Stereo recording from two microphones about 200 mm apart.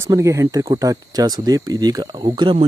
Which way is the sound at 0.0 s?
15° right (ahead or behind).